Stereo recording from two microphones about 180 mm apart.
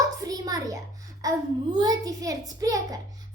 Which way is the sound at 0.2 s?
20° right (ahead or behind).